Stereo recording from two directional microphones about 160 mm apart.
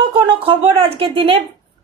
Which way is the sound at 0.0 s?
30° right (ahead or behind).